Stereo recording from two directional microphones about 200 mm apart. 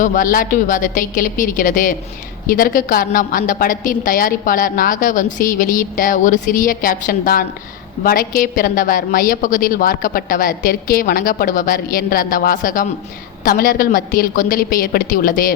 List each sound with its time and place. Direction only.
0.0 s a woman's voice: 40° left (ahead or behind)